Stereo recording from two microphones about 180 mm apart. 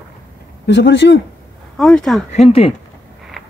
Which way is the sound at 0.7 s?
80° left.